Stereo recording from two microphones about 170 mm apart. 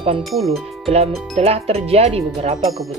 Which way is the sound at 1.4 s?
35° right (ahead or behind).